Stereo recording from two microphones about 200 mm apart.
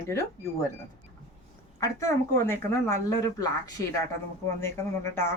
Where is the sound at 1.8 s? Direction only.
15° left (ahead or behind).